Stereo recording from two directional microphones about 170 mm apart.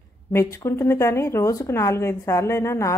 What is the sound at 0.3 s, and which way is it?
Speech, 15° left (ahead or behind).